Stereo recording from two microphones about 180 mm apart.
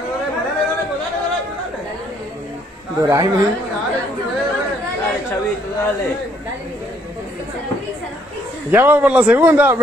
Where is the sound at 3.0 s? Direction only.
20° right (ahead or behind).